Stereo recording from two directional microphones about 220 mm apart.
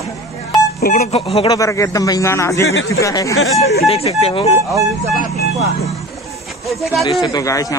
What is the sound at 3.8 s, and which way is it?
Speech, 30° left (ahead or behind).